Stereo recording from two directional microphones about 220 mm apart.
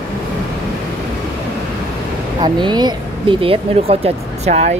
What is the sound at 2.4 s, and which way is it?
Speech, 20° right (ahead or behind).